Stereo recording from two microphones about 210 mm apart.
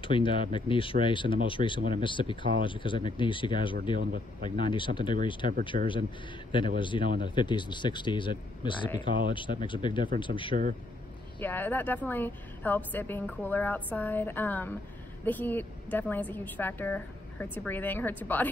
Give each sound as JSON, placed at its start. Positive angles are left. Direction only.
{"t": 0.0, "sound": "speech", "side_deg": 25}
{"t": 5.7, "sound": "speech", "side_deg": -40}
{"t": 6.8, "sound": "speech", "side_deg": 25}
{"t": 10.5, "sound": "speech", "side_deg": -40}
{"t": 11.3, "sound": "a woman's voice", "side_deg": 10}